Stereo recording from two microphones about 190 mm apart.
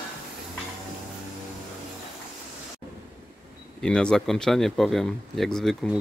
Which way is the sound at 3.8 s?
5° left (ahead or behind).